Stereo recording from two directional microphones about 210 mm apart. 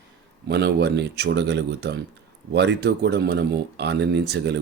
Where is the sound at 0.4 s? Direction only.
50° right (ahead or behind).